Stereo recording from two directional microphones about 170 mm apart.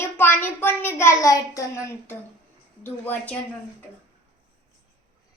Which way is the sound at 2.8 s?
10° left (ahead or behind).